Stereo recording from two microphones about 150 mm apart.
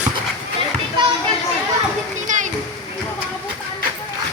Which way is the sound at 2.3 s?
55° right (ahead or behind).